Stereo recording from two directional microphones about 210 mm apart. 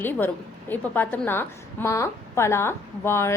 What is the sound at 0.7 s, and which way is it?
A woman's voice, 10° left (ahead or behind).